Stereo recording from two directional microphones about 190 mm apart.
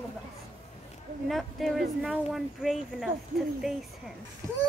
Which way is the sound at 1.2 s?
Centre (ahead or behind).